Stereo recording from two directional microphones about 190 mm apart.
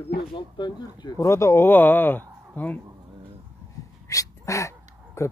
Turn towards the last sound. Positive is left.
turn(degrees=15)  # may be behind; listen again after turning